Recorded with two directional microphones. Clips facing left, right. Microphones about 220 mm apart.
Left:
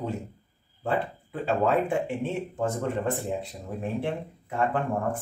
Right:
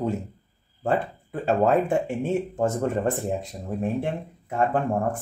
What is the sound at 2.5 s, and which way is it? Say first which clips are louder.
Speech: right 4 dB; 45° right (ahead or behind).